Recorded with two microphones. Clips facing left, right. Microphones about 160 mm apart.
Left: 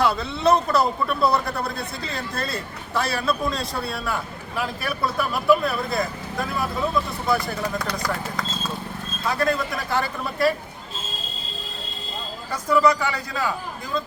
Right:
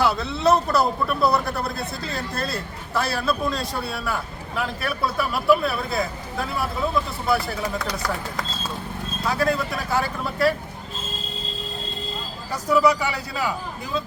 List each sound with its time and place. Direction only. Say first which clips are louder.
0.0 s speech: even; centre (ahead or behind)
12.5 s a man's voice: even; 10° right (ahead or behind)